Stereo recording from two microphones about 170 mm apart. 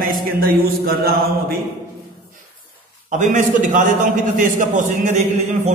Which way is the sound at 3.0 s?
45° right (ahead or behind).